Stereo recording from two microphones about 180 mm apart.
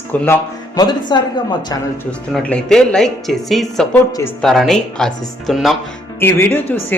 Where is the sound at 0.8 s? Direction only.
25° left (ahead or behind).